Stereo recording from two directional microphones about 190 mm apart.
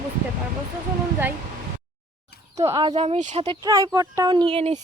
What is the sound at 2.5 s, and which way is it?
Speech, 20° right (ahead or behind).